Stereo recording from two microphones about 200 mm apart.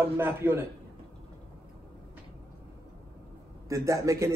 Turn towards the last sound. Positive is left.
turn(degrees=-15)  # may be behind; listen again after turning